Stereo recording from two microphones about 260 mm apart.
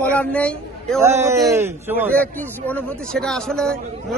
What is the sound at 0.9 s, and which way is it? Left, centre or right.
A man's voice, centre.